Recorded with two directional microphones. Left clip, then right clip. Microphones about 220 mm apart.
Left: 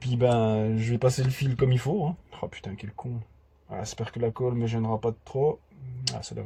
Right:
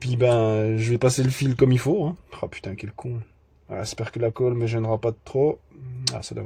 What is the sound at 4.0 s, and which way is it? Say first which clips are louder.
Speech: right 5 dB; 40° right (ahead or behind).